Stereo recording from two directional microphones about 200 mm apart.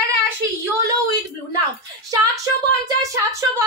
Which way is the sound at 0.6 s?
15° right (ahead or behind).